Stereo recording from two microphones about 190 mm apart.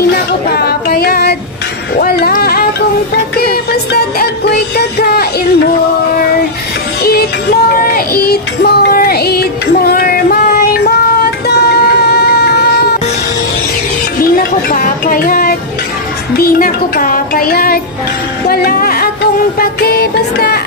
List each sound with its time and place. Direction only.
0.5 s child singing: 55° left (ahead or behind)
2.0 s a sound: 55° left (ahead or behind)
3.9 s music: 60° left (ahead or behind)
7.1 s music: 55° left (ahead or behind)
14.2 s music: 50° left (ahead or behind)